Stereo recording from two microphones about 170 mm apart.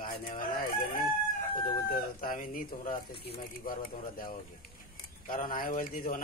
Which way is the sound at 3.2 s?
65° left (ahead or behind).